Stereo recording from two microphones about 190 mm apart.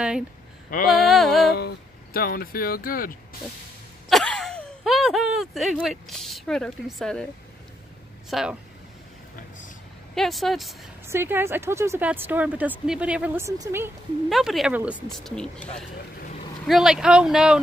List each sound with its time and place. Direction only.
0.8 s speech: centre (ahead or behind)
2.1 s speech: 50° left (ahead or behind)
4.1 s a sound: centre (ahead or behind)
8.3 s speech: centre (ahead or behind)
10.1 s speech: centre (ahead or behind)
11.1 s speech: 10° right (ahead or behind)
14.3 s speech: centre (ahead or behind)